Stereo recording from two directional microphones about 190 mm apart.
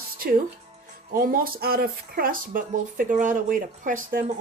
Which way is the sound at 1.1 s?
50° right (ahead or behind).